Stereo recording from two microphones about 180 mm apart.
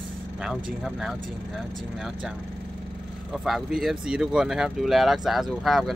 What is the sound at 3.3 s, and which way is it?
Speech, centre (ahead or behind).